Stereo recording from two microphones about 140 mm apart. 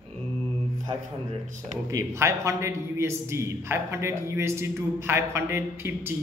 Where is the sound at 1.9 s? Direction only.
20° right (ahead or behind).